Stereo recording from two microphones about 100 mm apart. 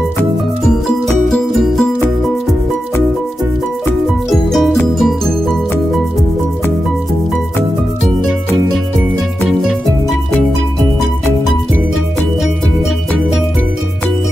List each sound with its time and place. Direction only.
0.7 s music: 5° left (ahead or behind)
4.3 s music: centre (ahead or behind)
9.4 s music: centre (ahead or behind)